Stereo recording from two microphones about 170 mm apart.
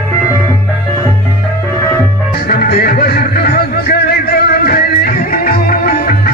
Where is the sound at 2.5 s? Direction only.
65° left (ahead or behind).